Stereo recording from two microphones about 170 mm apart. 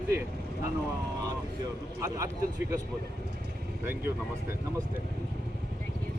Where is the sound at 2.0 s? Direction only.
20° right (ahead or behind).